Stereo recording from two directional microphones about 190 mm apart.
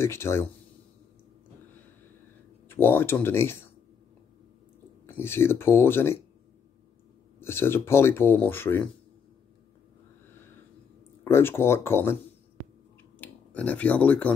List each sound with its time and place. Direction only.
0.0 s speech: 15° left (ahead or behind)
2.7 s speech: 10° left (ahead or behind)
5.0 s speech: 10° left (ahead or behind)
7.3 s speech: 10° left (ahead or behind)
11.2 s speech: 10° left (ahead or behind)
13.2 s speech: 5° left (ahead or behind)